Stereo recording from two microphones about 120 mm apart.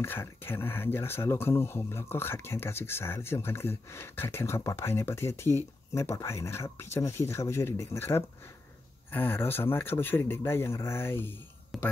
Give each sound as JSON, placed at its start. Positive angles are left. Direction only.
{"t": 0.0, "sound": "speech", "side_deg": 20}
{"t": 11.7, "sound": "speech", "side_deg": 0}